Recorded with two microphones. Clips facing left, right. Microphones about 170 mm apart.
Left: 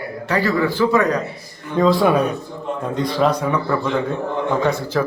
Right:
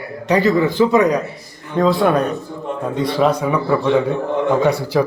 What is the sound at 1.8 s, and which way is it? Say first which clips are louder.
Speech: even; centre (ahead or behind).